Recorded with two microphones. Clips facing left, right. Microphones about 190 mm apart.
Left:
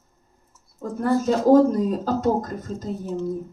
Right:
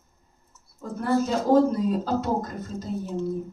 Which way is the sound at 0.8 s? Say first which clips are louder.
Left 3 dB; 45° left (ahead or behind).